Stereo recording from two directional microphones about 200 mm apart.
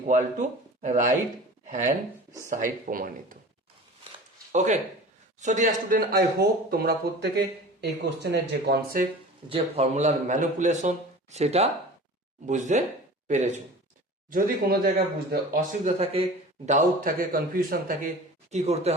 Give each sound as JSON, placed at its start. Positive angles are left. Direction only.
{"t": 0.1, "sound": "a man's voice", "side_deg": -40}
{"t": 4.5, "sound": "a man's voice", "side_deg": -35}
{"t": 9.5, "sound": "a man's voice", "side_deg": -30}
{"t": 15.8, "sound": "a man's voice", "side_deg": -35}
{"t": 18.5, "sound": "a man's voice", "side_deg": -30}